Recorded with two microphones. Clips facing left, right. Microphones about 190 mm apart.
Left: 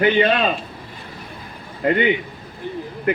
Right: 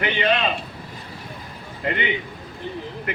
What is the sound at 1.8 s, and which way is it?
Speech, 45° left (ahead or behind).